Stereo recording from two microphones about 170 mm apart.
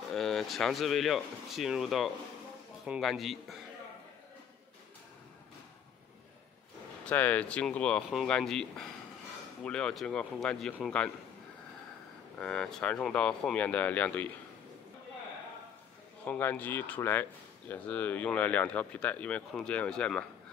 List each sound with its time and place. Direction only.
0.1 s speech: centre (ahead or behind)
7.1 s speech: 10° left (ahead or behind)
12.4 s speech: 5° left (ahead or behind)
16.3 s speech: 10° left (ahead or behind)